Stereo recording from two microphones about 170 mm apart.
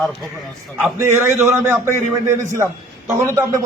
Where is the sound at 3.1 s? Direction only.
15° right (ahead or behind).